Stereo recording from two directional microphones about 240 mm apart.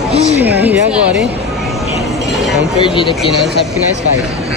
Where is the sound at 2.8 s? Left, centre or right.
Centre.